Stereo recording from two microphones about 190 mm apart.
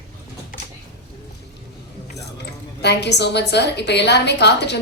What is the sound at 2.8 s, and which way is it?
A man's voice, 60° left (ahead or behind).